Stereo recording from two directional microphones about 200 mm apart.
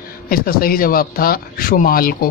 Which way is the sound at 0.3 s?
50° left (ahead or behind).